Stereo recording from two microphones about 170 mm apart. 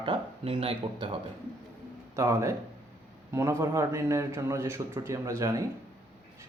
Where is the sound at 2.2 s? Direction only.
20° right (ahead or behind).